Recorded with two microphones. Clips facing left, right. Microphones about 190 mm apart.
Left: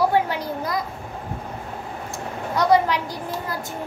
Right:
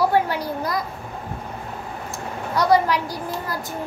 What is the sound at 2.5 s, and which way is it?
Speech, 20° left (ahead or behind).